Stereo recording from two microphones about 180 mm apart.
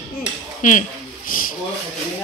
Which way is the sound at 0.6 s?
45° left (ahead or behind).